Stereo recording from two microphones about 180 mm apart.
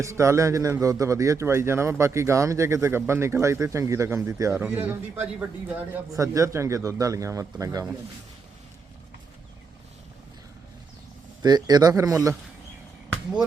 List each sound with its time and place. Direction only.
0.0 s a man's voice: 15° right (ahead or behind)
11.4 s speech: 20° right (ahead or behind)